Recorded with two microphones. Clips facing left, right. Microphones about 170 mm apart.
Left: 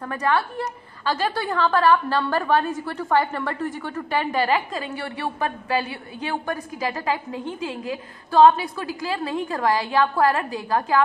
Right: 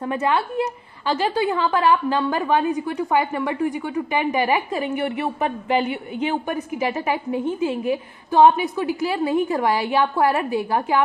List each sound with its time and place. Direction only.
0.0 s a woman's voice: 20° right (ahead or behind)